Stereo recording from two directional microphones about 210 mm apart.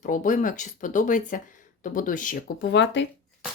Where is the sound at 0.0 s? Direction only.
35° left (ahead or behind).